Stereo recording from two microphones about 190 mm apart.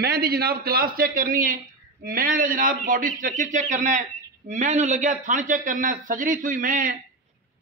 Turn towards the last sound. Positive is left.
turn(degrees=-45)  # may be behind; listen again after turning